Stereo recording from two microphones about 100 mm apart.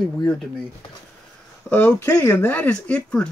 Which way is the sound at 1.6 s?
Centre (ahead or behind).